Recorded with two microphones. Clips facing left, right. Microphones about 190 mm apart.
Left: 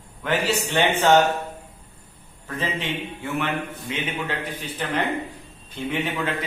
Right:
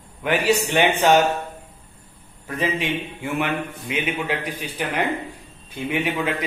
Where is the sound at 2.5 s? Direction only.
15° right (ahead or behind).